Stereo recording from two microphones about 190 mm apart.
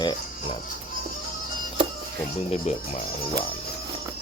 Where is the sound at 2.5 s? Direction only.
35° left (ahead or behind).